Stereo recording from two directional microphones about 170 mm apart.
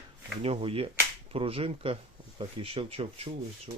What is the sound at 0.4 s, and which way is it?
Speech, 35° right (ahead or behind).